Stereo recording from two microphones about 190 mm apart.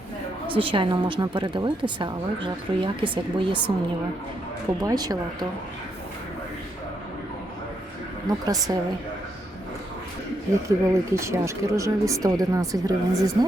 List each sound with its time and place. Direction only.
0.5 s speech: 25° right (ahead or behind)
4.8 s speech: 20° right (ahead or behind)
8.7 s speech: 15° right (ahead or behind)
10.7 s speech: 15° right (ahead or behind)